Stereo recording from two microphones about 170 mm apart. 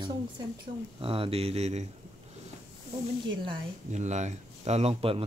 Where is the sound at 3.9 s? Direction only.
45° right (ahead or behind).